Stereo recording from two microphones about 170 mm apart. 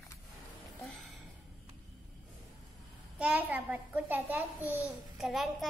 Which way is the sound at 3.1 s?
10° right (ahead or behind).